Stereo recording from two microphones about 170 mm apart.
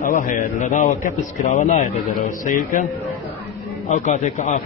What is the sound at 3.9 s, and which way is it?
Speech, 45° left (ahead or behind).